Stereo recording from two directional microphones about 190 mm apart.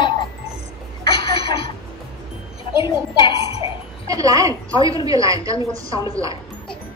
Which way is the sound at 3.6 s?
20° right (ahead or behind).